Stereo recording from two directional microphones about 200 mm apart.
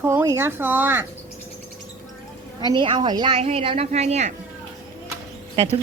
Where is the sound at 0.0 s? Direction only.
15° right (ahead or behind).